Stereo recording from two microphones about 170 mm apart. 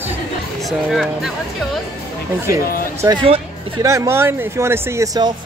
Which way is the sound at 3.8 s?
15° right (ahead or behind).